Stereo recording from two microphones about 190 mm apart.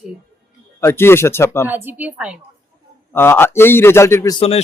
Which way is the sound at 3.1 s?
10° left (ahead or behind).